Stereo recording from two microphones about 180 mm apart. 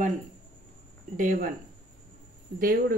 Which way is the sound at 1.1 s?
45° right (ahead or behind).